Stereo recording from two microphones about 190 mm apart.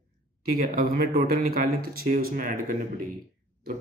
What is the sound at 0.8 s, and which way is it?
Speech, 50° right (ahead or behind).